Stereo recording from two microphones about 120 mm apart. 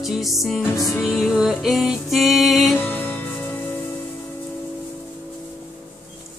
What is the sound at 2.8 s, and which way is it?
Music, 15° left (ahead or behind).